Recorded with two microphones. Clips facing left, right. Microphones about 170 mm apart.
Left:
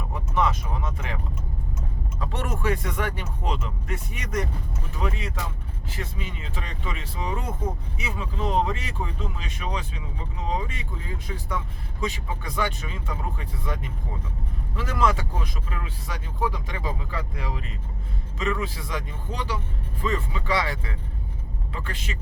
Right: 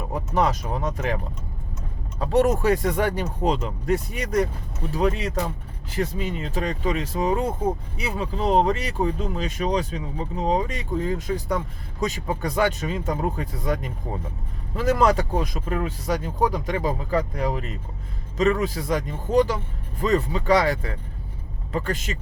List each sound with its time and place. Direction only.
0.1 s speech: 40° right (ahead or behind)